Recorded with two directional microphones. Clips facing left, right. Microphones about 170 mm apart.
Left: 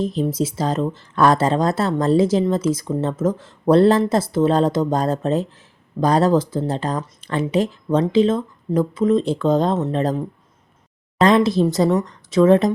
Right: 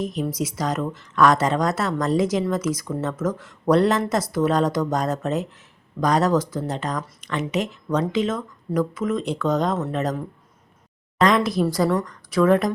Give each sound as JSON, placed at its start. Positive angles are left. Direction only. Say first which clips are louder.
{"t": 0.0, "sound": "speech", "louder": "left 5 dB", "side_deg": 30}